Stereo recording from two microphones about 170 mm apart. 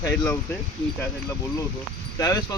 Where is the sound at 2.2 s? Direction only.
20° left (ahead or behind).